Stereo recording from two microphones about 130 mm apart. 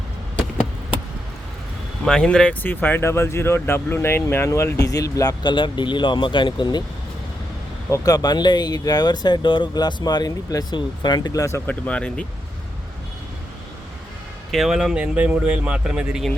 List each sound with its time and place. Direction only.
2.0 s speech: 5° left (ahead or behind); by 6.8 s 35° left (ahead or behind)
7.9 s speech: 25° left (ahead or behind)
11.7 s speech: 10° left (ahead or behind)
14.5 s speech: 5° right (ahead or behind)